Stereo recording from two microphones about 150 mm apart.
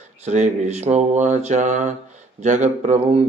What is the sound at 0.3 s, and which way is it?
Speech, 50° right (ahead or behind).